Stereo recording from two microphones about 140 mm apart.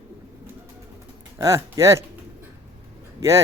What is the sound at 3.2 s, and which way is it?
Speech, 20° right (ahead or behind).